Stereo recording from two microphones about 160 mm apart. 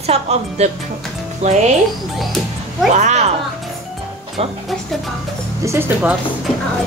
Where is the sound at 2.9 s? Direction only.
45° right (ahead or behind).